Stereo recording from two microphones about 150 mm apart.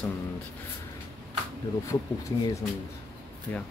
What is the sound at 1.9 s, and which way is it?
Speech, 20° left (ahead or behind).